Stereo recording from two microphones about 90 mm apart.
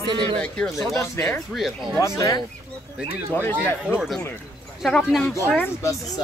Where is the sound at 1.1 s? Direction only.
20° left (ahead or behind).